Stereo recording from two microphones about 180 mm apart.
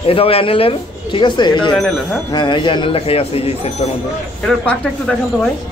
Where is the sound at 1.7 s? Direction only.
5° left (ahead or behind).